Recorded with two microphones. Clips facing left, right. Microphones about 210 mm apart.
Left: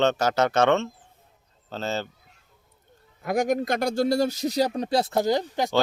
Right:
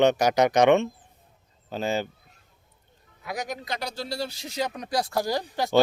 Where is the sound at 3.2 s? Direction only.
50° left (ahead or behind); by 5.4 s 20° left (ahead or behind).